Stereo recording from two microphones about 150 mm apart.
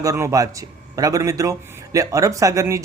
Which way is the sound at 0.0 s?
20° right (ahead or behind).